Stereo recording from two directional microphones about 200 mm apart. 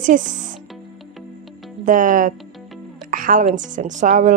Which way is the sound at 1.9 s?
40° right (ahead or behind).